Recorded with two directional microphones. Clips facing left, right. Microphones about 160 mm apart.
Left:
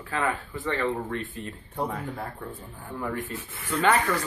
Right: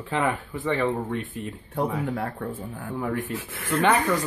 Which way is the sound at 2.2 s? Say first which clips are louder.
Right 6 dB; 65° right (ahead or behind).